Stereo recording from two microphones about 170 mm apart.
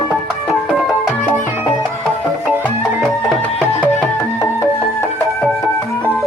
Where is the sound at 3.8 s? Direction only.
15° left (ahead or behind).